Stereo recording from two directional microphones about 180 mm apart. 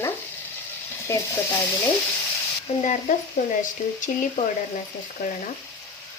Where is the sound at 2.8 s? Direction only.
45° left (ahead or behind).